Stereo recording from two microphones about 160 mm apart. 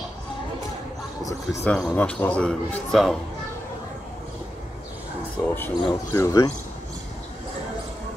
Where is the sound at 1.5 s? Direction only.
10° left (ahead or behind).